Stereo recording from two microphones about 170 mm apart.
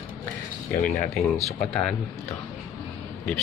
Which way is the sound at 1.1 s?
5° left (ahead or behind).